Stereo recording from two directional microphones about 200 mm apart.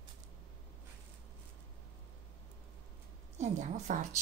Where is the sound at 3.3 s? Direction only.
35° right (ahead or behind).